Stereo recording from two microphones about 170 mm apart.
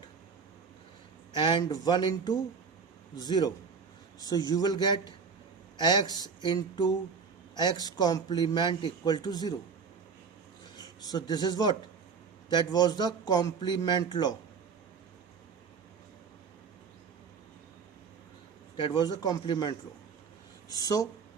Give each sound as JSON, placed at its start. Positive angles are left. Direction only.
{"t": 1.3, "sound": "a man's voice", "side_deg": 25}
{"t": 10.8, "sound": "a man's voice", "side_deg": 25}
{"t": 18.8, "sound": "a man's voice", "side_deg": 25}